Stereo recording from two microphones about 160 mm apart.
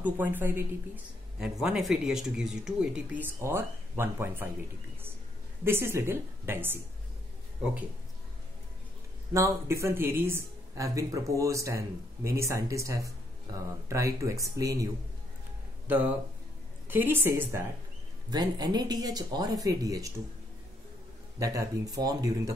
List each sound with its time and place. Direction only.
0.0 s a woman's voice: 10° right (ahead or behind)
5.6 s a woman's voice: 15° right (ahead or behind)
9.3 s speech: 15° right (ahead or behind)
16.9 s a woman's voice: 10° right (ahead or behind)
18.3 s speech: 25° right (ahead or behind)
21.4 s speech: 20° right (ahead or behind)